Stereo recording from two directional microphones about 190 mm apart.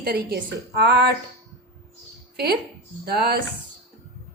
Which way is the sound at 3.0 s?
55° right (ahead or behind).